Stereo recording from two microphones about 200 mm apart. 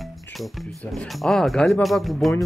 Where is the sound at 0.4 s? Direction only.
Centre (ahead or behind).